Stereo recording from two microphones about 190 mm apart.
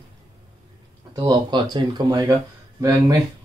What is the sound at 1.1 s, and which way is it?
Speech, 20° right (ahead or behind).